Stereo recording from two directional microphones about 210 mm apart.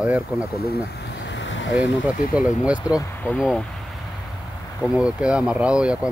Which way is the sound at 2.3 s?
5° right (ahead or behind).